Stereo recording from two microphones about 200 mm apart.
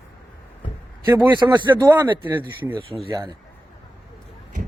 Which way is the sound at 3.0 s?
20° right (ahead or behind).